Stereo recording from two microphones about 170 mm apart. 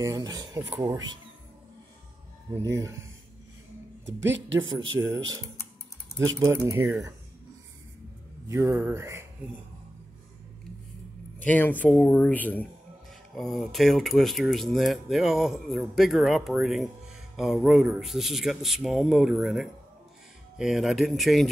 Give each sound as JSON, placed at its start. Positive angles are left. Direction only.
{"t": 0.0, "sound": "speech", "side_deg": -25}
{"t": 4.0, "sound": "speech", "side_deg": -90}
{"t": 5.0, "sound": "speech", "side_deg": -5}
{"t": 6.4, "sound": "speech", "side_deg": -20}
{"t": 8.5, "sound": "speech", "side_deg": -15}
{"t": 11.4, "sound": "speech", "side_deg": 10}